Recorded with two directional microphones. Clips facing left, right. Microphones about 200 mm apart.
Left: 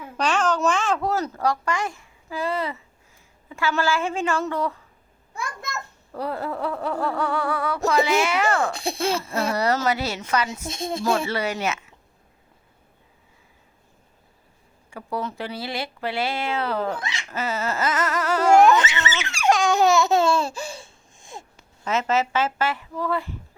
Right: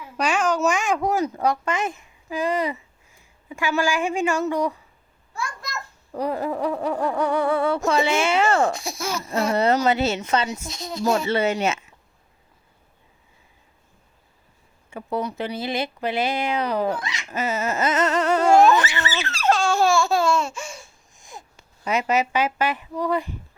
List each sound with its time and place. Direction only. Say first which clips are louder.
0.2 s speech: right 1 dB; 10° right (ahead or behind)
6.1 s speech: right 3 dB; 15° right (ahead or behind)
7.9 s a sound: left 4 dB; 30° right (ahead or behind)
8.7 s speech: left 4 dB; 30° left (ahead or behind)
9.5 s a sound: right 4 dB; 25° right (ahead or behind)
10.7 s speech: left 4 dB; 25° left (ahead or behind)
11.3 s a sound: right 4 dB; 25° right (ahead or behind)
14.8 s speech: right 3 dB; 20° right (ahead or behind)
17.0 s speech: even; 25° left (ahead or behind)
17.2 s a sound: right 2 dB; 20° right (ahead or behind)
18.8 s laughter: even; 20° left (ahead or behind)
21.8 s speech: right 1 dB; 15° right (ahead or behind)